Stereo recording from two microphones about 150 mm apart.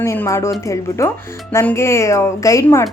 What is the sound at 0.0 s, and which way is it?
A woman's voice, 15° left (ahead or behind).